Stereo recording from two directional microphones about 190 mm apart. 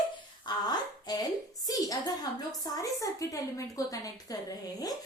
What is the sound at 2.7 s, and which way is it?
A woman's voice, 15° left (ahead or behind).